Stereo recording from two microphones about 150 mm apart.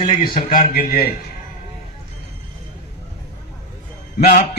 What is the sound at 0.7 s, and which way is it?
Speech, 90° left.